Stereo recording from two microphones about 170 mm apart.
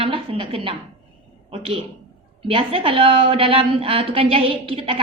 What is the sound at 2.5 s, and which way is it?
A woman's voice, 35° right (ahead or behind).